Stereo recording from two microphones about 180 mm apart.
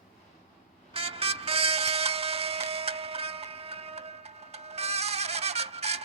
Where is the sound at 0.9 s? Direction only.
35° right (ahead or behind).